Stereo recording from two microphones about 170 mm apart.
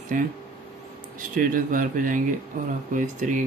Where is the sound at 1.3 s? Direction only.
55° right (ahead or behind).